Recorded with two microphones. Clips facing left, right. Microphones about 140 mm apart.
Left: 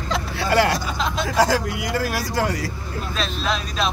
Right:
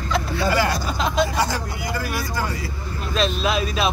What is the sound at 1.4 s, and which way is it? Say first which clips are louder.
Vehicle: left 5 dB; 90° left.